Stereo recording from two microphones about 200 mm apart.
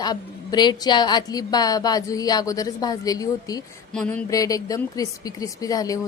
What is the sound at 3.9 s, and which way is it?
A woman's voice, 5° left (ahead or behind).